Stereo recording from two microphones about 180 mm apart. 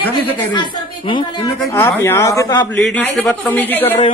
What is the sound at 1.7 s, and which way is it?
A man's voice, 15° left (ahead or behind).